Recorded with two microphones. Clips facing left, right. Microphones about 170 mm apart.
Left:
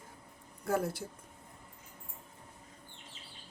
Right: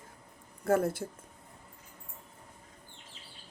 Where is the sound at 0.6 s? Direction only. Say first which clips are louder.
Right 5 dB; 50° right (ahead or behind).